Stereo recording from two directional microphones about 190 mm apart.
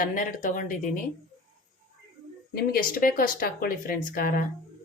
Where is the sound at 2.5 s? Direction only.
50° left (ahead or behind).